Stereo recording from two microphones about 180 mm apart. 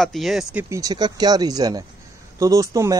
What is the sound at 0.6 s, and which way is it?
Speech, 20° right (ahead or behind).